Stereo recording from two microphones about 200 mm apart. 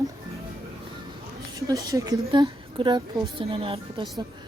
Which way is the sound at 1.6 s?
20° right (ahead or behind).